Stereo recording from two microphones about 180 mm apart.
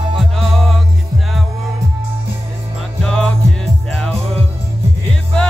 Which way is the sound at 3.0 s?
5° left (ahead or behind).